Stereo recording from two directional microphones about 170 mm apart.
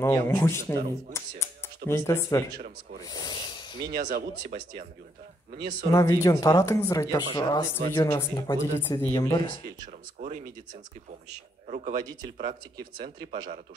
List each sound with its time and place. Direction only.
0.0 s speech: 15° left (ahead or behind)
3.0 s rub: 25° left (ahead or behind)
4.0 s a man's voice: 50° right (ahead or behind)
5.9 s speech: 20° left (ahead or behind)
10.2 s speech: 45° right (ahead or behind)
12.4 s speech: 55° right (ahead or behind)